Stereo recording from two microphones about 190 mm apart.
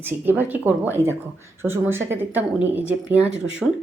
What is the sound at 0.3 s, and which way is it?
Speech, 10° right (ahead or behind).